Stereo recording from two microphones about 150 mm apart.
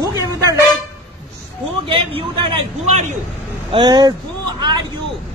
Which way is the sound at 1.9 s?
35° right (ahead or behind).